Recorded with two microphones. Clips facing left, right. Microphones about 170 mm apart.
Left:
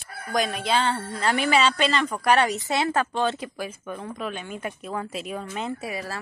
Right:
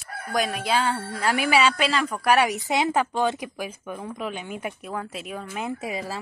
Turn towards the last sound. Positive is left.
turn(degrees=-15)  # may be behind; listen again after turning